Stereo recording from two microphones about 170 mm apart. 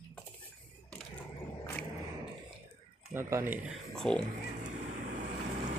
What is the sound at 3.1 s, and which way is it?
Speech, 15° right (ahead or behind).